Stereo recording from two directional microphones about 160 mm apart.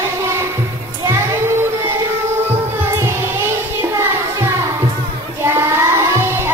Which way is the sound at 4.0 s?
15° right (ahead or behind).